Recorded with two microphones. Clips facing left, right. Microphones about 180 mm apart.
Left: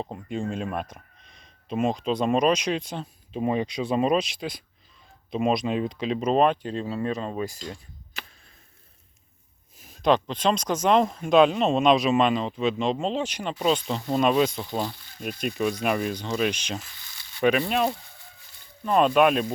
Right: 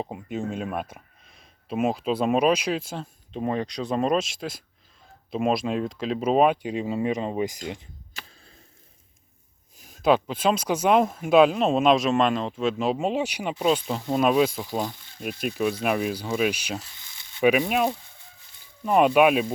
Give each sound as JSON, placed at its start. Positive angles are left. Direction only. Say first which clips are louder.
{"t": 0.0, "sound": "speech", "louder": "even", "side_deg": -5}
{"t": 9.8, "sound": "speech", "louder": "right 1 dB", "side_deg": 0}
{"t": 17.0, "sound": "a sound", "louder": "left 1 dB", "side_deg": -20}
{"t": 17.4, "sound": "speech", "louder": "right 1 dB", "side_deg": -10}